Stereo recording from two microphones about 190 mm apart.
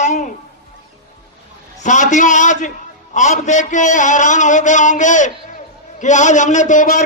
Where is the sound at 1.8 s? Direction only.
40° left (ahead or behind).